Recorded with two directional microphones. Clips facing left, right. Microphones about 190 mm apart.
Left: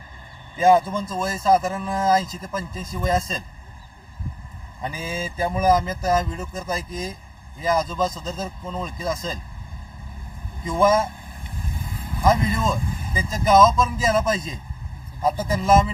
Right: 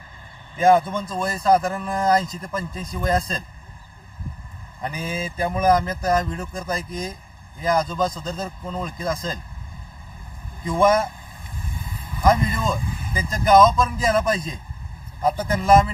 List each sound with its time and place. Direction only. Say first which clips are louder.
0.9 s speech: even; 5° left (ahead or behind)
4.8 s speech: right 1 dB; 5° left (ahead or behind)
5.0 s a sound: even; 25° left (ahead or behind)
5.5 s speech: right 1 dB; centre (ahead or behind)
10.7 s speech: right 1 dB; centre (ahead or behind)
12.2 s speech: even; centre (ahead or behind)